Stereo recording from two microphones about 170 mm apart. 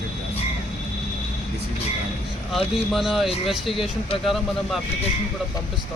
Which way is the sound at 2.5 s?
Centre (ahead or behind).